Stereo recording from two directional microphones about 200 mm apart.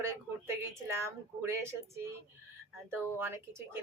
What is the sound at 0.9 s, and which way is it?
A woman's voice, 15° right (ahead or behind).